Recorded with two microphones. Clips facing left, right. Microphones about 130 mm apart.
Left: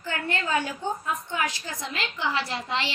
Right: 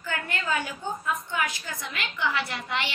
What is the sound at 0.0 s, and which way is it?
A woman's voice, 30° left (ahead or behind).